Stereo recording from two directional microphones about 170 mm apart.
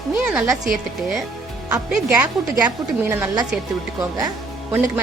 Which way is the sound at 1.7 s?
5° right (ahead or behind).